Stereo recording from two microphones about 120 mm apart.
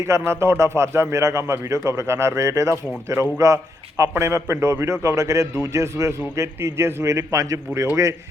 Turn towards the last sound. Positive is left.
turn(degrees=-25)  # may be behind; listen again after turning